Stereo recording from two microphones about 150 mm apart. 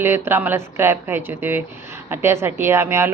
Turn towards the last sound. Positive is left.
turn(degrees=-15)  # may be behind; listen again after turning